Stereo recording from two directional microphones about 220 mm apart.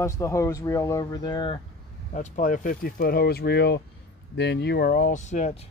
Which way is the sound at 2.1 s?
35° left (ahead or behind).